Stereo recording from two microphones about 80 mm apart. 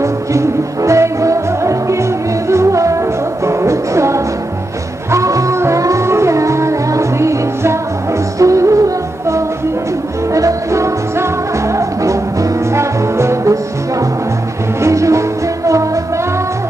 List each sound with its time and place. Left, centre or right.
0.0 s music: right
14.8 s music: right